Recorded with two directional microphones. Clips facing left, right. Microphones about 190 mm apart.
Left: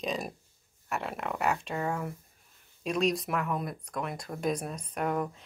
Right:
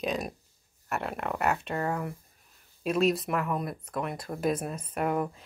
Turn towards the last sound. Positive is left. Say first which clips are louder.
# right 2 dB
turn(degrees=-5)  # may be behind; listen again after turning